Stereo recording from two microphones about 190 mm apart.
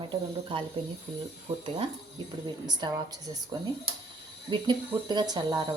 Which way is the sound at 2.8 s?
20° right (ahead or behind).